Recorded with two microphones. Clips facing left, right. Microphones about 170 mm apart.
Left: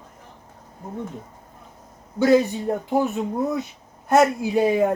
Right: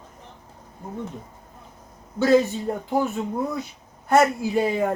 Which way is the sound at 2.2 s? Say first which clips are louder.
Left 1 dB; 15° left (ahead or behind).